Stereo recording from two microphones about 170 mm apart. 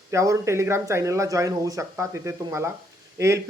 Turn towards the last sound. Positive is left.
turn(degrees=-15)  # may be behind; listen again after turning